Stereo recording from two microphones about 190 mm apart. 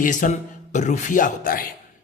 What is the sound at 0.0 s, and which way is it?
Speech, 40° left (ahead or behind).